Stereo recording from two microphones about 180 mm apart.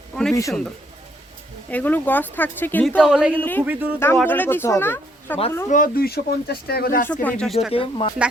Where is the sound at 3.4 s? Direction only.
10° left (ahead or behind).